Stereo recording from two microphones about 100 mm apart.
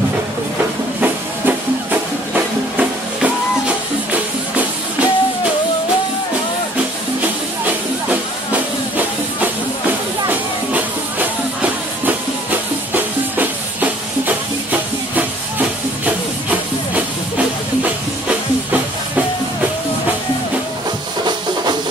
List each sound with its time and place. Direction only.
1.0 s music: 20° right (ahead or behind)
7.6 s music: 15° right (ahead or behind)